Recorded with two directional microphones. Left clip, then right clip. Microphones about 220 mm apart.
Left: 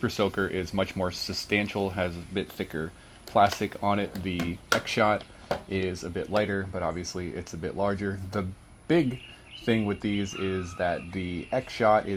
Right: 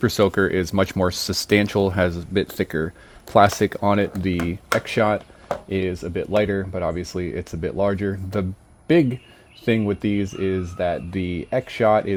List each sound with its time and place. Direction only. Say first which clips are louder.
0.0 s speech: right 9 dB; 60° right (ahead or behind)
4.4 s speech: right 2 dB; 40° right (ahead or behind)
9.6 s speech: right 6 dB; 40° right (ahead or behind)